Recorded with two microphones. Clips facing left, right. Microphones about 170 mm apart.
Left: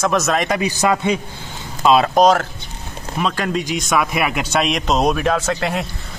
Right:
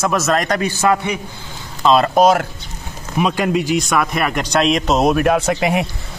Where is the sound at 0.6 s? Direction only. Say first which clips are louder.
Right 1 dB; 15° left (ahead or behind).